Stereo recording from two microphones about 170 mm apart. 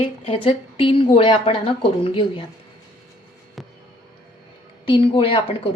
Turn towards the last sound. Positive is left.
turn(degrees=35)  # may be behind; listen again after turning